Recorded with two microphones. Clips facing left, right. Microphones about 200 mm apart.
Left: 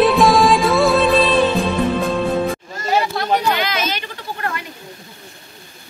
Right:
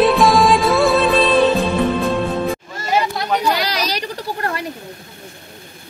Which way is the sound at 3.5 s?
35° right (ahead or behind).